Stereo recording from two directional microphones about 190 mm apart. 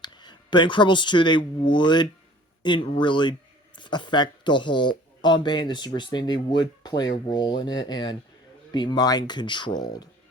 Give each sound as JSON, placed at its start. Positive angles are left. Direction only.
{"t": 0.0, "sound": "speech", "side_deg": 25}